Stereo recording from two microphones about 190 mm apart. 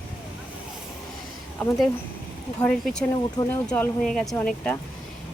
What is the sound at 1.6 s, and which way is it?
Speech, 5° left (ahead or behind).